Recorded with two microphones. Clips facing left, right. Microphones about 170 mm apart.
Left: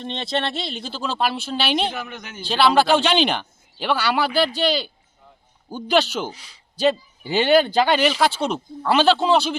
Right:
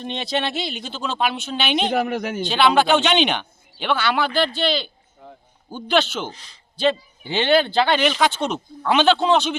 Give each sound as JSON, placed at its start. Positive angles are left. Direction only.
{"t": 0.0, "sound": "speech", "side_deg": -5}
{"t": 1.9, "sound": "speech", "side_deg": -60}
{"t": 2.5, "sound": "a man's voice", "side_deg": 0}